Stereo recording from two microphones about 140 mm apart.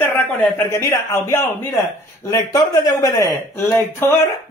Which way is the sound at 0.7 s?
20° left (ahead or behind).